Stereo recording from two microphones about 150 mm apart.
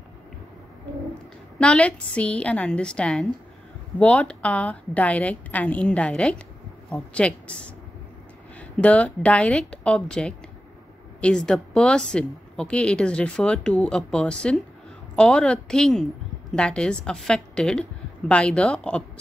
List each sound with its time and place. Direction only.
1.6 s a woman's voice: 10° left (ahead or behind)